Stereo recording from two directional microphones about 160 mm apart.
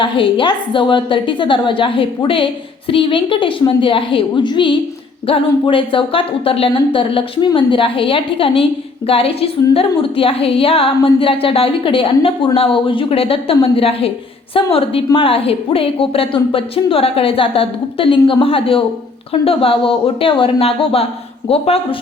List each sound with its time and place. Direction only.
0.0 s a woman's voice: 30° left (ahead or behind)